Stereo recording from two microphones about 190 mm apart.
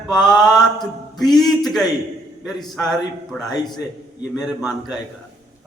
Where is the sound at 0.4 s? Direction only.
Centre (ahead or behind).